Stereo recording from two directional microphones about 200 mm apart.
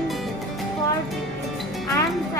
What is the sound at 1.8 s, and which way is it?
Music, 15° left (ahead or behind).